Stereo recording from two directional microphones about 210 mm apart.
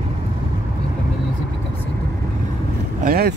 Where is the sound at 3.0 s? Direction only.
45° right (ahead or behind).